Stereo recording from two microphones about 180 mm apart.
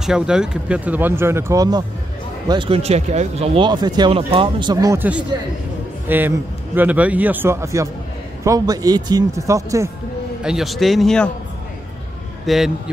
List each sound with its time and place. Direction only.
0.0 s speech: 5° right (ahead or behind); by 5.0 s 20° right (ahead or behind)
6.0 s speech: 10° right (ahead or behind)
10.4 s speech: centre (ahead or behind)
12.4 s speech: centre (ahead or behind)